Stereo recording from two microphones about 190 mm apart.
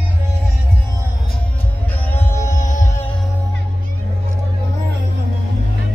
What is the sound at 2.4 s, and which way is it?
Music, 40° left (ahead or behind).